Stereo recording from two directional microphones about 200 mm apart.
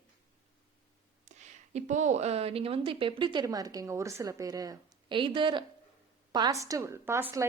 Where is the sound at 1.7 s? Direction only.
35° right (ahead or behind).